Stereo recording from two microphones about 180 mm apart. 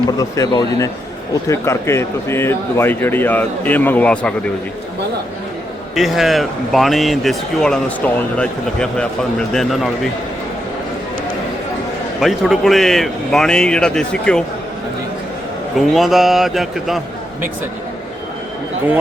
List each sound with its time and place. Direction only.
0.2 s speech: 20° left (ahead or behind)
5.9 s speech: centre (ahead or behind)
12.2 s speech: centre (ahead or behind)
15.9 s speech: centre (ahead or behind)